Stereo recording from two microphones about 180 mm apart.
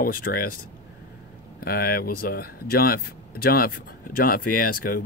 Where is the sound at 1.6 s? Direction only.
55° left (ahead or behind).